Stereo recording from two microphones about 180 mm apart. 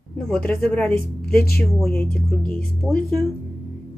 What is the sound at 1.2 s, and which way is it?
Speech, 60° left (ahead or behind).